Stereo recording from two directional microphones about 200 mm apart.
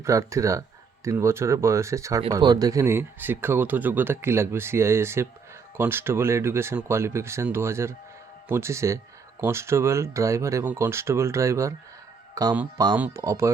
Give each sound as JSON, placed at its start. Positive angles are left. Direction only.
{"t": 0.0, "sound": "speech", "side_deg": -15}